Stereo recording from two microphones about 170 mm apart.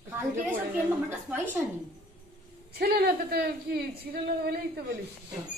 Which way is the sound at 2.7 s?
65° right (ahead or behind).